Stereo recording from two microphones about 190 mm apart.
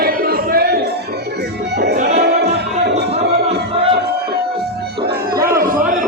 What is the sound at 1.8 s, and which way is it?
Music, 60° right (ahead or behind).